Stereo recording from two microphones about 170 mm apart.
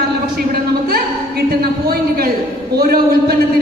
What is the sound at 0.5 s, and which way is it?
A man's voice, 65° right (ahead or behind).